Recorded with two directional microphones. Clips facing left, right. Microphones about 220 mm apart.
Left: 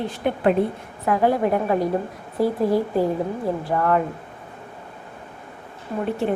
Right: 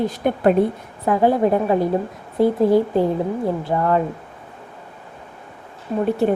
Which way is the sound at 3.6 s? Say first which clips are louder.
Right 1 dB; 25° right (ahead or behind).